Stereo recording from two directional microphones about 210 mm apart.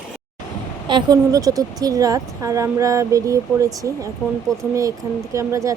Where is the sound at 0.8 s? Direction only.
20° right (ahead or behind).